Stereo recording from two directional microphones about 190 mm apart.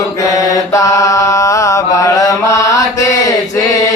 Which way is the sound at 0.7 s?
15° left (ahead or behind).